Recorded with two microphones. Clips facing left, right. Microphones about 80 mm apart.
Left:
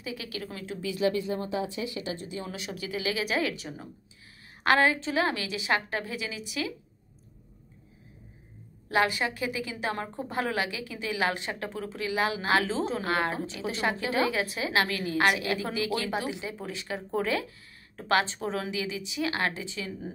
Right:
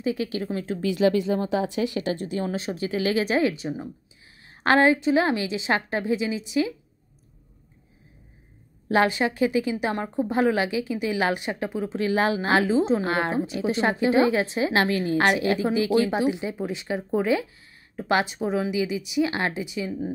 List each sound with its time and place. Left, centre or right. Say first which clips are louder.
0.0 s a woman's voice: right 10 dB; right
0.7 s a woman's voice: right 6 dB; right
2.5 s a woman's voice: right 8 dB; right
8.8 s a woman's voice: right 5 dB; right
12.0 s a woman's voice: right 6 dB; right; by 20.1 s centre